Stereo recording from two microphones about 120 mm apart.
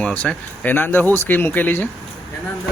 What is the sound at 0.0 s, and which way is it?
Speech, 10° left (ahead or behind).